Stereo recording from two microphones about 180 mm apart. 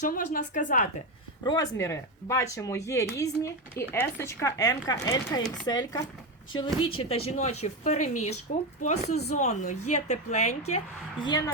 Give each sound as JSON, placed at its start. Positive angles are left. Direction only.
{"t": 0.0, "sound": "a woman's voice", "side_deg": 45}
{"t": 1.5, "sound": "speech", "side_deg": 20}
{"t": 11.2, "sound": "speech", "side_deg": 25}